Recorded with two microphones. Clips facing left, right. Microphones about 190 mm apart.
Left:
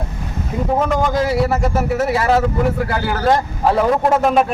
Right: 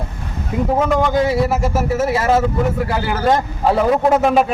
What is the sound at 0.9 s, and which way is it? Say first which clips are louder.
Speech: right 2 dB; centre (ahead or behind).